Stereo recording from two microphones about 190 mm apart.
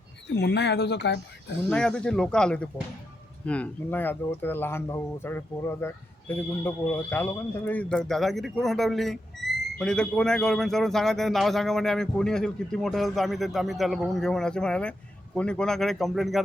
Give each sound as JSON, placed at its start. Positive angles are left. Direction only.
{"t": 0.3, "sound": "speech", "side_deg": 65}
{"t": 1.7, "sound": "speech", "side_deg": 5}